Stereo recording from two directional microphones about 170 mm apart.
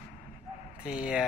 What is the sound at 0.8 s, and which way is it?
Dog, 5° right (ahead or behind).